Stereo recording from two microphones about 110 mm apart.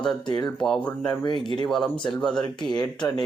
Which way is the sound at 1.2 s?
45° left (ahead or behind).